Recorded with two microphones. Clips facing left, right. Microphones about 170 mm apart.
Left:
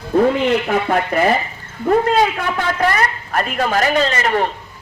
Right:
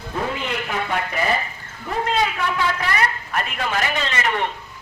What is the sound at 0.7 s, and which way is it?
Speech, 50° left (ahead or behind).